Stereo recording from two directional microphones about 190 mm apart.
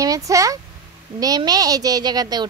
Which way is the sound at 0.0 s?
15° right (ahead or behind).